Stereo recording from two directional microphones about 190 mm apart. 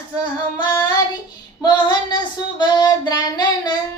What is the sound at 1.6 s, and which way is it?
Female singing, 20° left (ahead or behind).